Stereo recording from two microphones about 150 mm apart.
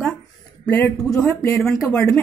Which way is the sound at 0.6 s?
10° left (ahead or behind).